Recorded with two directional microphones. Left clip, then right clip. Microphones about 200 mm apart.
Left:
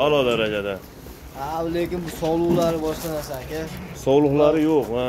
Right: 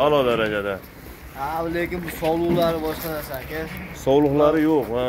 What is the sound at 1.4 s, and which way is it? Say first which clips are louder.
Speech: even; 10° left (ahead or behind).